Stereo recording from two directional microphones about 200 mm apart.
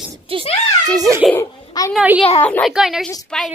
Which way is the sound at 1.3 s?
15° left (ahead or behind).